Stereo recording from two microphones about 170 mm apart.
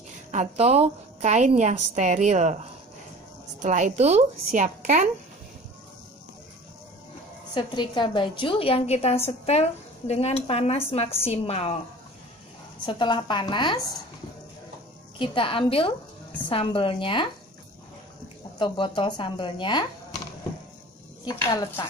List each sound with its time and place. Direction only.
0.3 s a woman's voice: 40° right (ahead or behind)
7.5 s a woman's voice: 25° left (ahead or behind)
12.8 s speech: 25° left (ahead or behind)
15.1 s a woman's voice: 30° left (ahead or behind)
18.6 s speech: 25° left (ahead or behind)